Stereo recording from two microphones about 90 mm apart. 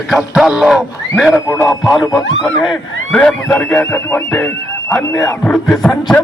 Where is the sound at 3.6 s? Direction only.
25° left (ahead or behind).